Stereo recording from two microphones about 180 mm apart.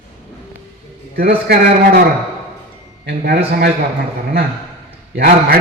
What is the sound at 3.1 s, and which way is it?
Speech, 60° right (ahead or behind).